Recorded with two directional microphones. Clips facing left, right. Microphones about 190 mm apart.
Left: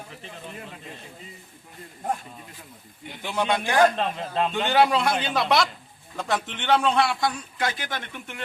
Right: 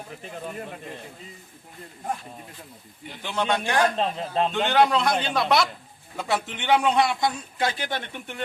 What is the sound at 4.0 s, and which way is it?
Speech, 30° right (ahead or behind).